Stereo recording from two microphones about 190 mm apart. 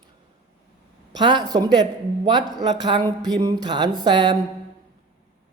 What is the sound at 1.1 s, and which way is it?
Speech, 25° right (ahead or behind).